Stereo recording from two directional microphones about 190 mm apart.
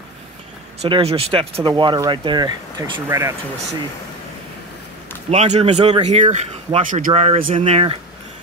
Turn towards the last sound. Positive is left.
turn(degrees=-30)  # may be behind; listen again after turning